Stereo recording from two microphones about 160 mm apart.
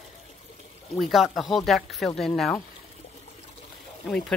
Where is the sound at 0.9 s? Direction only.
Centre (ahead or behind).